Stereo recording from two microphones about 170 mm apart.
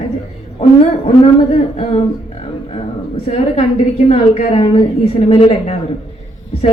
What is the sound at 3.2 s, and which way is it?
Speech, 40° left (ahead or behind).